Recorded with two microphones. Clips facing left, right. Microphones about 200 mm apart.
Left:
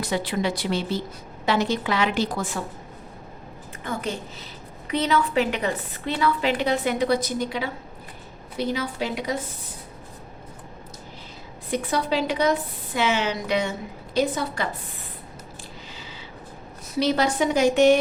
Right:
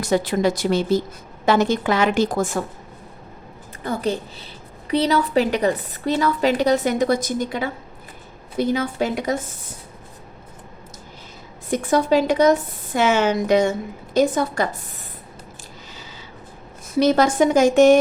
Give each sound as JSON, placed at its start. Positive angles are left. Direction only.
{"t": 0.0, "sound": "a woman's voice", "side_deg": -45}
{"t": 3.8, "sound": "a woman's voice", "side_deg": -35}
{"t": 11.7, "sound": "a woman's voice", "side_deg": -45}
{"t": 16.9, "sound": "a woman's voice", "side_deg": -45}